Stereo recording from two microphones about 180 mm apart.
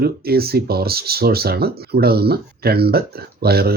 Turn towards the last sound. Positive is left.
turn(degrees=-60)  # may be behind; listen again after turning